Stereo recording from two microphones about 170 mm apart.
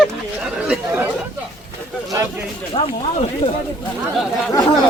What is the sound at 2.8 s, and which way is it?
Speech, 40° left (ahead or behind).